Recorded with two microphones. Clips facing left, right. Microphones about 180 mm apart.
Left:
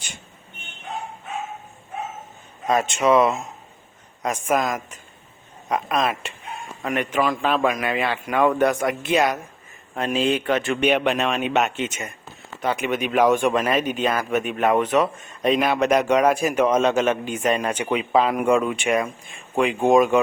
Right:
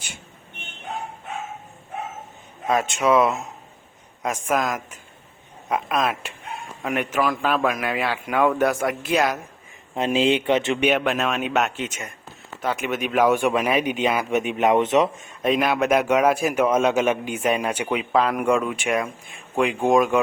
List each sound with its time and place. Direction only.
2.6 s a man's voice: centre (ahead or behind)
9.9 s speech: 25° right (ahead or behind)
10.8 s a man's voice: centre (ahead or behind); by 15.3 s 20° right (ahead or behind)
15.3 s a man's voice: 5° right (ahead or behind)
18.1 s a man's voice: centre (ahead or behind)